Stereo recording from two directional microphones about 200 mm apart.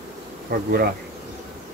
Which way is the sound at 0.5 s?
50° right (ahead or behind).